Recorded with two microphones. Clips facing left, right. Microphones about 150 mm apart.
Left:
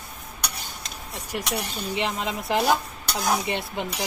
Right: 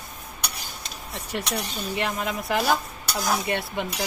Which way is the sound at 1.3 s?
5° left (ahead or behind).